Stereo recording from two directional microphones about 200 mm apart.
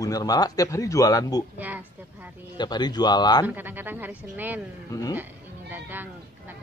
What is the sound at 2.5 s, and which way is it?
Speech, 20° left (ahead or behind).